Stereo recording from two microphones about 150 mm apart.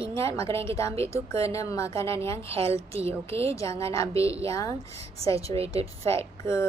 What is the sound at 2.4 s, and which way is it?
Speech, 40° right (ahead or behind).